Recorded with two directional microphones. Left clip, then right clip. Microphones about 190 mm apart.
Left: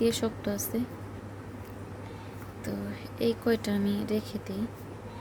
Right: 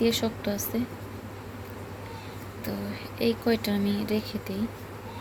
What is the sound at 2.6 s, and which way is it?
Speech, 20° left (ahead or behind).